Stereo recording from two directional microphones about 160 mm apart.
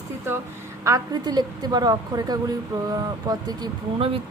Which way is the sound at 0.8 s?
20° right (ahead or behind).